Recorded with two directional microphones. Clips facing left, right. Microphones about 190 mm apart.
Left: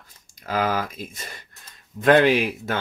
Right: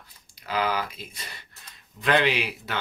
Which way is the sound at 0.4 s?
45° left (ahead or behind).